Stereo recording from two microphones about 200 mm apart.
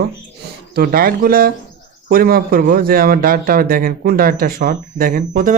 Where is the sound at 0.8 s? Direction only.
50° right (ahead or behind).